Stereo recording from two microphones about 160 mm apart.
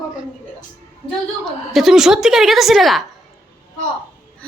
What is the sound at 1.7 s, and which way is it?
Speech, centre (ahead or behind).